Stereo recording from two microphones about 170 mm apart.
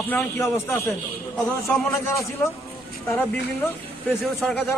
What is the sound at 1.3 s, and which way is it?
Speech, 10° left (ahead or behind).